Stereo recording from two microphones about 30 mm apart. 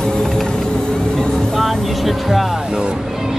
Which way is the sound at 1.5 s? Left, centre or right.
Centre.